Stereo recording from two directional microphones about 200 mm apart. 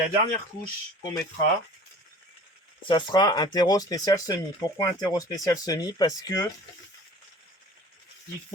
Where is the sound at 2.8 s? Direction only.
20° left (ahead or behind).